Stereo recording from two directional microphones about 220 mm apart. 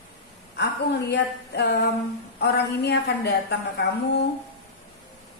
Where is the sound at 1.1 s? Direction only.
50° left (ahead or behind).